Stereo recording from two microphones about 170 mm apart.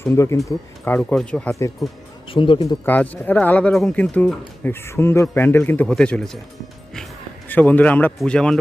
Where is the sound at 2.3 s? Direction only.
30° left (ahead or behind).